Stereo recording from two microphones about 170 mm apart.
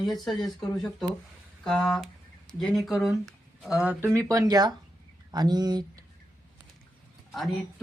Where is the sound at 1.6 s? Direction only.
5° left (ahead or behind).